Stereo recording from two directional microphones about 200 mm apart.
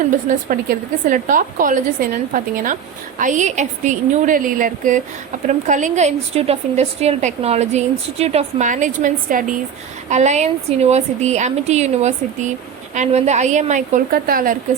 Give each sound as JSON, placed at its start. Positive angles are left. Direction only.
{"t": 0.3, "sound": "a woman's voice", "side_deg": -45}